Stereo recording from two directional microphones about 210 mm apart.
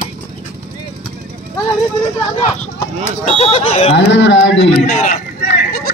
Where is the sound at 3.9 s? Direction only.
55° left (ahead or behind).